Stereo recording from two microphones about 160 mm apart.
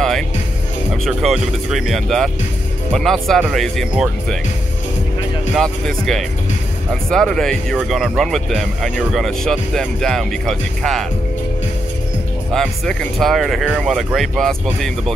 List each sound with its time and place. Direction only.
1.0 s speech: centre (ahead or behind)
5.6 s speech: 5° left (ahead or behind)
12.5 s speech: 5° left (ahead or behind)